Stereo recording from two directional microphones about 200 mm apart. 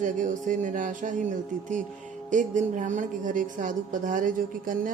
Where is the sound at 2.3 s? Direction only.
40° right (ahead or behind).